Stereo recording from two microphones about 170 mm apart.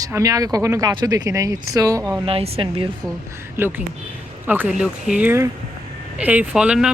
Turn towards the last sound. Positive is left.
turn(degrees=-5)  # may be behind; listen again after turning